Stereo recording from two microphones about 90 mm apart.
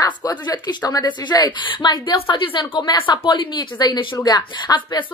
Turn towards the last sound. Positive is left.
turn(degrees=55)  # may be behind; listen again after turning